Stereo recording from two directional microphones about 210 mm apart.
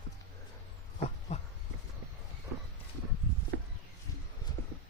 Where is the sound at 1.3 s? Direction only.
35° left (ahead or behind).